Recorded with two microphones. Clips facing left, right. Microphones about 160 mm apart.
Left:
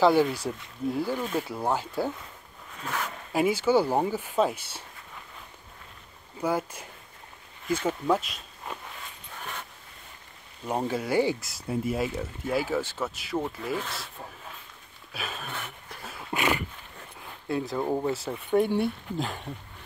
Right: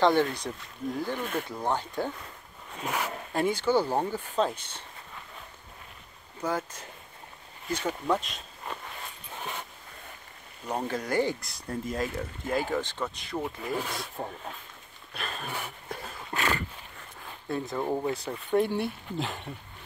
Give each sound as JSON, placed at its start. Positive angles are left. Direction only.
{"t": 0.0, "sound": "speech", "side_deg": 5}
{"t": 2.8, "sound": "dog", "side_deg": -10}
{"t": 3.3, "sound": "speech", "side_deg": 5}
{"t": 6.4, "sound": "speech", "side_deg": 10}
{"t": 10.7, "sound": "speech", "side_deg": 10}
{"t": 14.2, "sound": "speech", "side_deg": -65}
{"t": 15.1, "sound": "speech", "side_deg": 5}
{"t": 15.4, "sound": "dog", "side_deg": -5}
{"t": 16.1, "sound": "dog", "side_deg": 10}
{"t": 17.5, "sound": "speech", "side_deg": 5}